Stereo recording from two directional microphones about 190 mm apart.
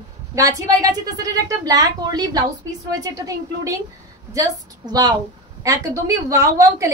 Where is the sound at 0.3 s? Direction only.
15° right (ahead or behind).